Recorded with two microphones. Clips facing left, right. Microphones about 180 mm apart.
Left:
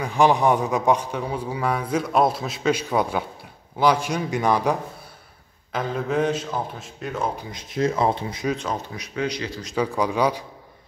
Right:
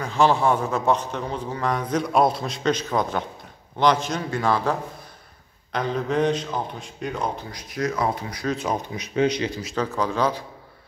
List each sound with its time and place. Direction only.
0.0 s a man's voice: 15° left (ahead or behind)
5.7 s speech: 5° left (ahead or behind)
7.5 s speech: 25° left (ahead or behind)
8.5 s speech: 15° right (ahead or behind)
9.8 s a man's voice: 15° left (ahead or behind)